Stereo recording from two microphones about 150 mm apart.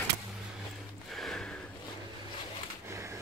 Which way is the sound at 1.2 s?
5° left (ahead or behind).